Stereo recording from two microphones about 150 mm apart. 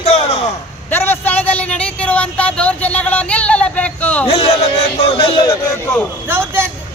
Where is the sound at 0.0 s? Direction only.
45° left (ahead or behind).